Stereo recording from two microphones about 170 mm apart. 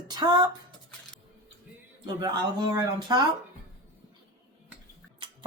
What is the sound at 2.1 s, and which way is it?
Speech, 25° right (ahead or behind).